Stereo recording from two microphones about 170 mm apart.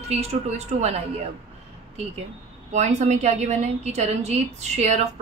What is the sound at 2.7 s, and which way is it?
A woman's voice, 45° right (ahead or behind).